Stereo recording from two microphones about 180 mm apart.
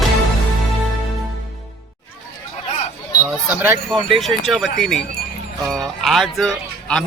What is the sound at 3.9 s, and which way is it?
Speech, centre (ahead or behind).